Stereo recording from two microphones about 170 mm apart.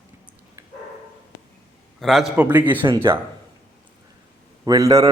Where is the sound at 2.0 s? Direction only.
Centre (ahead or behind).